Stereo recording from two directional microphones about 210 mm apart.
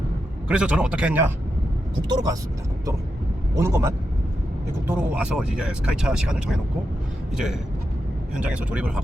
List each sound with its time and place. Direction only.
0.4 s speech: 5° right (ahead or behind)
2.0 s speech: 20° right (ahead or behind)
3.5 s a man's voice: 15° right (ahead or behind)
8.4 s speech: 5° right (ahead or behind)